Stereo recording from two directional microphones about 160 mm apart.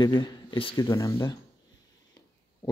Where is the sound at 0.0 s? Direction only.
25° left (ahead or behind).